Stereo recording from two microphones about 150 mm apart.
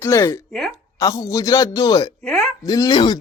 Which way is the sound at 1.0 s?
20° left (ahead or behind).